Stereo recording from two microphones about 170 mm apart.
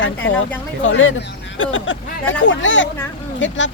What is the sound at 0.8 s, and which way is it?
Speech, 90° left.